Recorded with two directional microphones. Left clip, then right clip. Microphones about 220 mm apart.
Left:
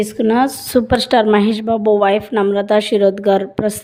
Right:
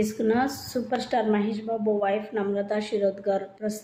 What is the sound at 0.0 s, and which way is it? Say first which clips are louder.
A woman's voice: left 9 dB; 45° left (ahead or behind).